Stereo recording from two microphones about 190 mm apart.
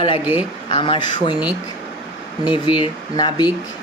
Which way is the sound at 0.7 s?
30° left (ahead or behind).